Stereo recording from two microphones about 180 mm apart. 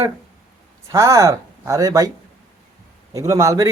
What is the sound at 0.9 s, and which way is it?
Speech, 15° right (ahead or behind).